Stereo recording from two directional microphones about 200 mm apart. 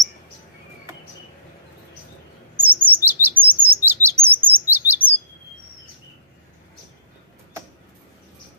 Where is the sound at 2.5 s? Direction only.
10° right (ahead or behind).